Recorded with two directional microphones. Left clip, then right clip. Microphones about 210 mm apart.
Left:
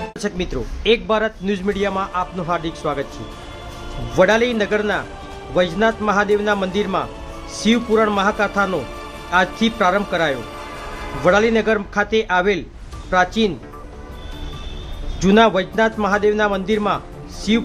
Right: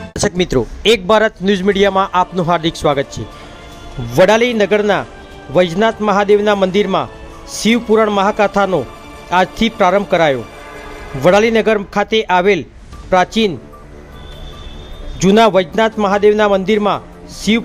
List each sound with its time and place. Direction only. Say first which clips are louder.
0.1 s a man's voice: right 9 dB; 35° right (ahead or behind)
4.1 s a man's voice: right 5 dB; 35° right (ahead or behind)
15.2 s a man's voice: right 4 dB; 30° right (ahead or behind)